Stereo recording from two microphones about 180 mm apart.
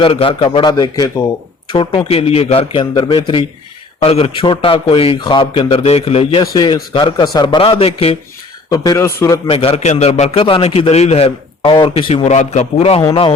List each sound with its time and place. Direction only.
0.0 s a man's voice: 30° left (ahead or behind)
6.4 s a man's voice: 20° left (ahead or behind)
8.7 s speech: 20° left (ahead or behind)
9.5 s a man's voice: 30° left (ahead or behind)